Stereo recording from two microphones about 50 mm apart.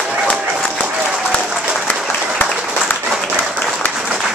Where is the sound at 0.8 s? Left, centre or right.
Centre.